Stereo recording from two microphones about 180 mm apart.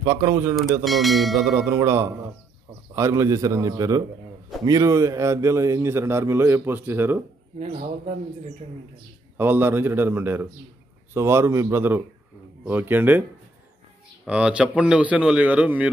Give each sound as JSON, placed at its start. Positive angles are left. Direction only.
{"t": 0.0, "sound": "a man's voice", "side_deg": -15}
{"t": 0.8, "sound": "speech", "side_deg": 0}
{"t": 1.5, "sound": "a man's voice", "side_deg": -15}
{"t": 9.4, "sound": "a man's voice", "side_deg": -10}
{"t": 14.2, "sound": "a man's voice", "side_deg": -5}